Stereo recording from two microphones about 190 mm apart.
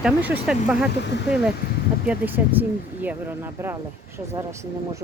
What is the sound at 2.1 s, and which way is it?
Speech, 10° right (ahead or behind).